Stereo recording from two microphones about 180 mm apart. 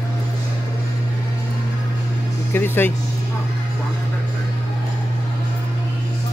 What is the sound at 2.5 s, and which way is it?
Speech, 10° left (ahead or behind).